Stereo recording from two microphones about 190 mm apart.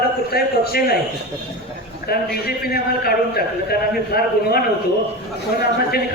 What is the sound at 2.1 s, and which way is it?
A man's voice, 55° left (ahead or behind).